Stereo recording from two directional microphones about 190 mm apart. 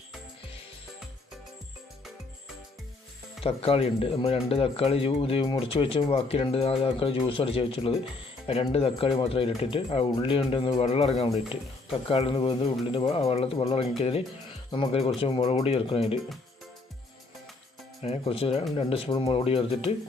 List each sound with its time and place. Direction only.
3.4 s speech: 30° left (ahead or behind)
18.0 s speech: 30° left (ahead or behind)